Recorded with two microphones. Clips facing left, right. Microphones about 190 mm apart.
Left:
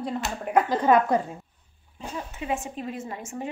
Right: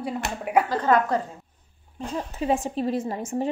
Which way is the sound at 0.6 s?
10° left (ahead or behind).